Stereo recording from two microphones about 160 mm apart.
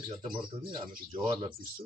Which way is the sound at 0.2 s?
30° right (ahead or behind).